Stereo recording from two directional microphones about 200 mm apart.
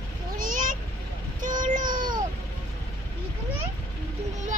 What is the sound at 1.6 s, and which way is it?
Child singing, 40° right (ahead or behind).